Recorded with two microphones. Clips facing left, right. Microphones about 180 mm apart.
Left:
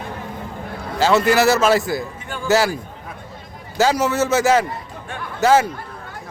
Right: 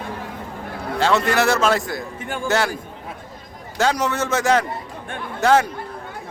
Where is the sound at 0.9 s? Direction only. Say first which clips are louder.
Left 3 dB; 5° left (ahead or behind).